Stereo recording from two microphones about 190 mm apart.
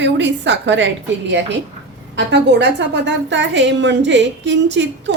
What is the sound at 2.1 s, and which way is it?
A woman's voice, 65° right (ahead or behind).